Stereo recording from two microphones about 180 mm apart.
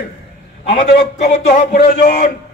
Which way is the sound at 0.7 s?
70° left (ahead or behind).